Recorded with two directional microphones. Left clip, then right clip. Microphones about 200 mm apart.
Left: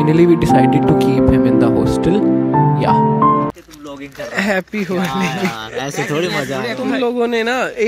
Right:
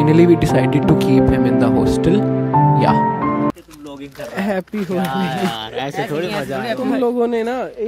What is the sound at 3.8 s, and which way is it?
Speech, 10° right (ahead or behind).